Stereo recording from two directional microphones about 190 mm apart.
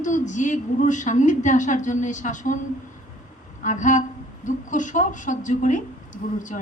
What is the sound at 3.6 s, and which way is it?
A woman's voice, 40° left (ahead or behind).